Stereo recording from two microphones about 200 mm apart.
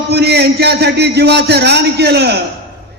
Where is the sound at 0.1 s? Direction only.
55° right (ahead or behind).